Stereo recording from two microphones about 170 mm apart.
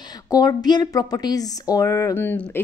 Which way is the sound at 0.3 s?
20° left (ahead or behind).